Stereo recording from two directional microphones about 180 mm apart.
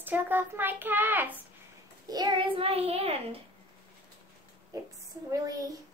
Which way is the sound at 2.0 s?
25° right (ahead or behind).